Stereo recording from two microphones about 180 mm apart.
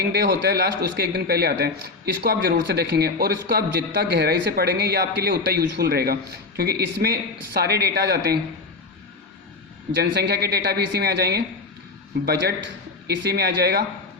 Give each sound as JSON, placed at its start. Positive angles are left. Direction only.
{"t": 0.0, "sound": "speech", "side_deg": -65}
{"t": 9.9, "sound": "speech", "side_deg": -65}